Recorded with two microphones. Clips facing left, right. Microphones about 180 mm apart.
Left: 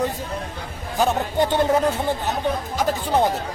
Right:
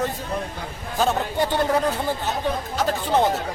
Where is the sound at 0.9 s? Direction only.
20° left (ahead or behind).